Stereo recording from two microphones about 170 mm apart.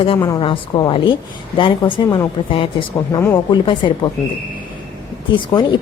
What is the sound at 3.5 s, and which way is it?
Speech, 30° left (ahead or behind).